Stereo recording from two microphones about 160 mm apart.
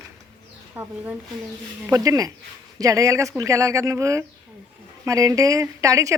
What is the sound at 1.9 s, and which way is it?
Speech, 20° right (ahead or behind).